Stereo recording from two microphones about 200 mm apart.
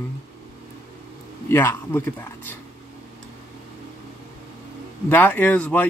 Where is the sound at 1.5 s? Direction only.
10° left (ahead or behind).